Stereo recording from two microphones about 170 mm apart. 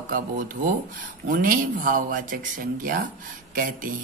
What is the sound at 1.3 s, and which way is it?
Speech, 55° right (ahead or behind).